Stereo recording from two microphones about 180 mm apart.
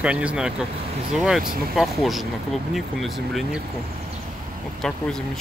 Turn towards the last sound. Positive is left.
turn(degrees=0)  # may be behind; listen again after turning